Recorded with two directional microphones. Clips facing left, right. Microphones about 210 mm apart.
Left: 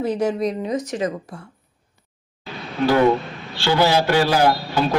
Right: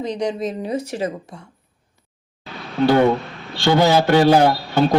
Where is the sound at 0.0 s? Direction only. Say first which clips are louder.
Left 2 dB; 5° left (ahead or behind).